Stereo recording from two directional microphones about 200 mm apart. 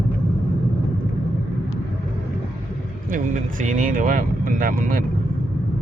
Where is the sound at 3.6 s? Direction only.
40° right (ahead or behind).